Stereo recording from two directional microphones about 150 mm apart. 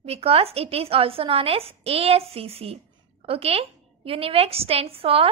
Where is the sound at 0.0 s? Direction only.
40° right (ahead or behind).